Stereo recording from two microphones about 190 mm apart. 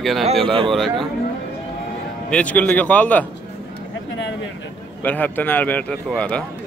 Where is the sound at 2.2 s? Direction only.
5° left (ahead or behind).